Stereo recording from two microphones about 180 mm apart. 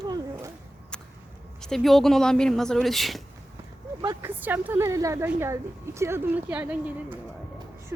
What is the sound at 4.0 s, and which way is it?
Speech, 20° right (ahead or behind).